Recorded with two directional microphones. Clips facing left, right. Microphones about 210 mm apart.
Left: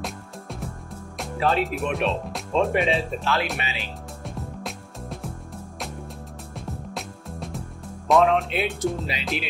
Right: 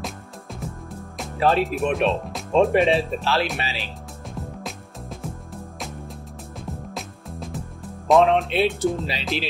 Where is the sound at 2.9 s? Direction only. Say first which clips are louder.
Right 3 dB; 30° right (ahead or behind).